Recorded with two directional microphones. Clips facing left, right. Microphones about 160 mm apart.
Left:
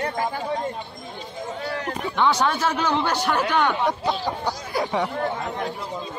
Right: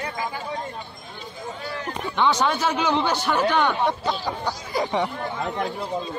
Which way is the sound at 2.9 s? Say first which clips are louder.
Even; 5° left (ahead or behind).